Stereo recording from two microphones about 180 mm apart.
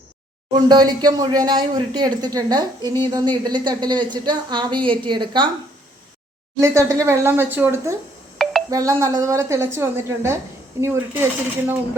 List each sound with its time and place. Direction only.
0.5 s speech: 25° right (ahead or behind)
6.6 s a woman's voice: 15° right (ahead or behind)
8.4 s a sound: centre (ahead or behind)
8.7 s a woman's voice: 20° right (ahead or behind)